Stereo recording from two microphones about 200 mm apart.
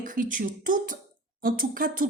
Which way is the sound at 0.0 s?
40° right (ahead or behind).